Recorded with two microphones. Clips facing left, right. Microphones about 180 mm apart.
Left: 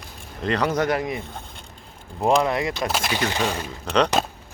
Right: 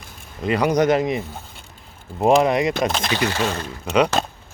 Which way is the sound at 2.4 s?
20° right (ahead or behind).